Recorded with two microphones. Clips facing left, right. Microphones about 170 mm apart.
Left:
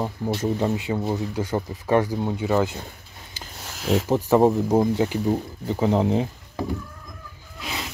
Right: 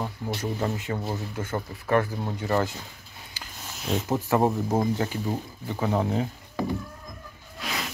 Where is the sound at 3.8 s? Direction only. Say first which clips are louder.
Left 6 dB; 90° left.